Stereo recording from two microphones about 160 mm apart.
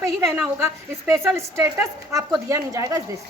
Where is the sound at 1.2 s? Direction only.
15° right (ahead or behind).